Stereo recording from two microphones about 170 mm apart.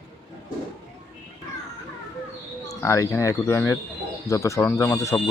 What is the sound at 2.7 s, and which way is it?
Speech, 20° left (ahead or behind).